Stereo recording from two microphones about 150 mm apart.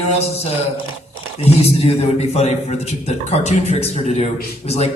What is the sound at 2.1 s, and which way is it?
Speech, 45° left (ahead or behind).